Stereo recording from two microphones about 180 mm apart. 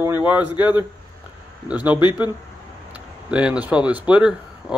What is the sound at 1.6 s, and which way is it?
Speech, 10° right (ahead or behind).